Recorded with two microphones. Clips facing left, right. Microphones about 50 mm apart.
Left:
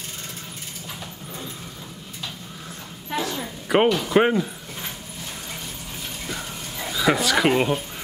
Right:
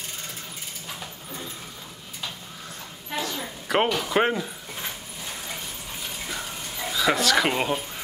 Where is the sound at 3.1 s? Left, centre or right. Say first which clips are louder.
Left 3 dB; centre.